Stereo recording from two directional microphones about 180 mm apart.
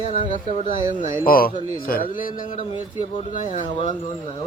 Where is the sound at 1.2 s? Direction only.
55° left (ahead or behind).